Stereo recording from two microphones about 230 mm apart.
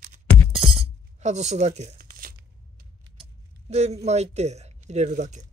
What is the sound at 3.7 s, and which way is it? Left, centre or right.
Speech, right.